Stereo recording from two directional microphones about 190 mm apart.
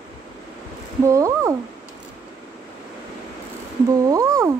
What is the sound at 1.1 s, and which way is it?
Speech, 15° right (ahead or behind).